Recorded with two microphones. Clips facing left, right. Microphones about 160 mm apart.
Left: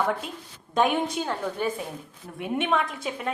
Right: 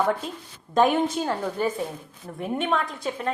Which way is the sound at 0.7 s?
Centre (ahead or behind).